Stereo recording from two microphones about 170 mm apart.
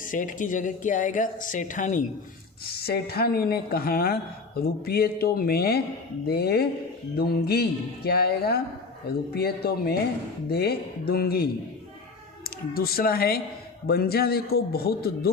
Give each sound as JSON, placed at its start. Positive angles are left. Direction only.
{"t": 0.0, "sound": "speech", "side_deg": 50}
{"t": 2.8, "sound": "a woman's voice", "side_deg": 65}
{"t": 12.7, "sound": "a woman's voice", "side_deg": 60}